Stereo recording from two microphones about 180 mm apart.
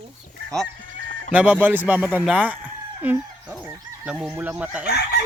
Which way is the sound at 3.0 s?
10° right (ahead or behind).